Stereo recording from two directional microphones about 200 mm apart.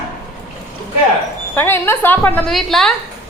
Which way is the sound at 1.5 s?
10° left (ahead or behind).